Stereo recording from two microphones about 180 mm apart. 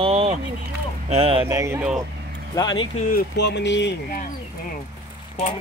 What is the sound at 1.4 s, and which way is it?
Speech, 15° right (ahead or behind).